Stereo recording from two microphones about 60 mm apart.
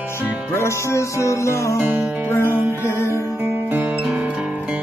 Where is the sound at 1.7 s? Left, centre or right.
Right.